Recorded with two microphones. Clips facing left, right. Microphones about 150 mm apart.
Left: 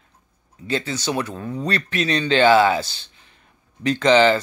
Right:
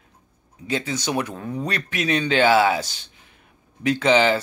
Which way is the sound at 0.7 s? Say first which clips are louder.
Left 1 dB; 15° right (ahead or behind).